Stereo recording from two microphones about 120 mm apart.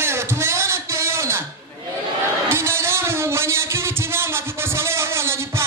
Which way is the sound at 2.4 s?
20° right (ahead or behind).